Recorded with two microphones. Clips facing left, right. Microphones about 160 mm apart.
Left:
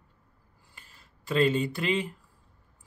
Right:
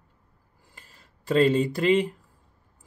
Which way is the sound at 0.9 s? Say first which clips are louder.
Right 5 dB; 35° right (ahead or behind).